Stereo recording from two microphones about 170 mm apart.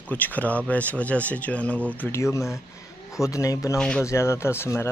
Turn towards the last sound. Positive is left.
turn(degrees=15)  # may be behind; listen again after turning